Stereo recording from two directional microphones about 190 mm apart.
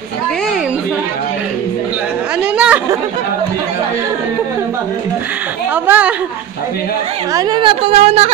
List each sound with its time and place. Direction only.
2.5 s chatter: 5° right (ahead or behind)
5.9 s a woman's voice: 5° right (ahead or behind)
7.3 s a woman's voice: 25° right (ahead or behind)